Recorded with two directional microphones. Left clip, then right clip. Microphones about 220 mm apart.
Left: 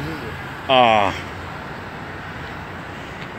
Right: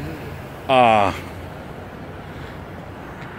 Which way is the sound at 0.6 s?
20° right (ahead or behind).